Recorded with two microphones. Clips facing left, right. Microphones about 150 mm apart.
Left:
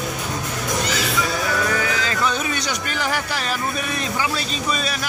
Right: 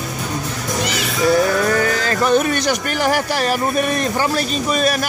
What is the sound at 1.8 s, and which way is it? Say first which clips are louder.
Speech: right 5 dB; 55° right (ahead or behind).